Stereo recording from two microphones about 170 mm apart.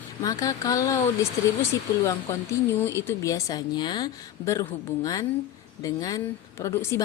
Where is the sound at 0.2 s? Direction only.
20° left (ahead or behind).